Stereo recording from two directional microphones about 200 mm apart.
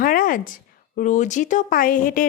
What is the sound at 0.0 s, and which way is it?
A woman's voice, 45° left (ahead or behind).